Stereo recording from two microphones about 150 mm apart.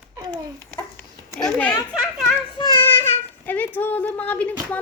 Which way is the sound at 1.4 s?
10° left (ahead or behind).